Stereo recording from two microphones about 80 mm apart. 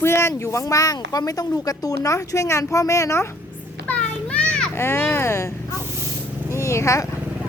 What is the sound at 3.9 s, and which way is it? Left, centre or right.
Children playing, centre.